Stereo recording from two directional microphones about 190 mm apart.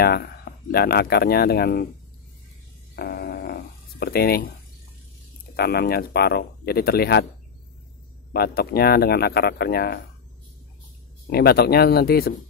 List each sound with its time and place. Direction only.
0.0 s speech: 55° left (ahead or behind)
3.0 s a sound: 55° left (ahead or behind)
5.6 s speech: 55° left (ahead or behind)
8.3 s speech: 55° left (ahead or behind)
11.2 s speech: 55° left (ahead or behind)